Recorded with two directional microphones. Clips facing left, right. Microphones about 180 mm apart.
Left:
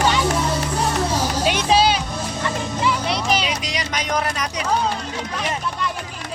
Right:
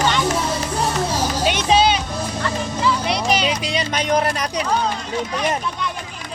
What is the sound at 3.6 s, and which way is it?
Music, 30° right (ahead or behind).